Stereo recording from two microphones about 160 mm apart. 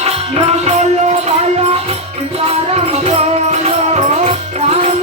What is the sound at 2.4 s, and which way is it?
Music, 40° right (ahead or behind).